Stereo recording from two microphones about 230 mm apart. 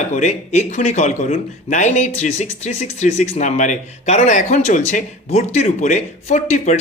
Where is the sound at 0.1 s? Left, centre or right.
Left.